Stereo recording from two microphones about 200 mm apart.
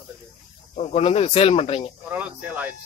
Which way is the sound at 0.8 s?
30° left (ahead or behind).